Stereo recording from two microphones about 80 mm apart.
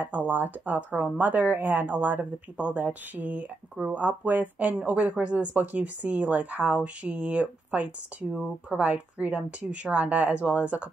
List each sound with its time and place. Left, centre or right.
0.0 s a woman's voice: right